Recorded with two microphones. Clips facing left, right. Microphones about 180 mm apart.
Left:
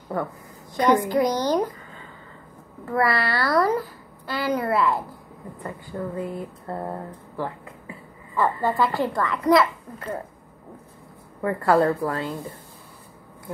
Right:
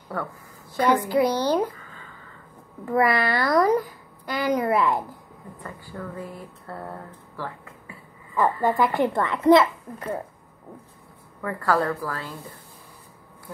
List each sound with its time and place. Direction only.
0.1 s a child's voice: 20° left (ahead or behind)
1.0 s a child's voice: 10° right (ahead or behind)
2.8 s a child's voice: 20° right (ahead or behind)
5.6 s speech: 25° left (ahead or behind)
8.4 s a child's voice: 15° right (ahead or behind)
11.4 s speech: 25° left (ahead or behind)